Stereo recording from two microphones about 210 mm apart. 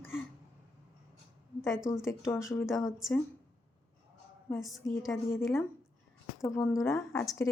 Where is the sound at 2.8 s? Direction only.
Centre (ahead or behind).